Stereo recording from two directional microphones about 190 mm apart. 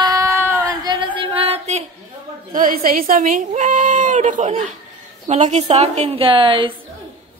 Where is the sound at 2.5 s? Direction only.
45° right (ahead or behind).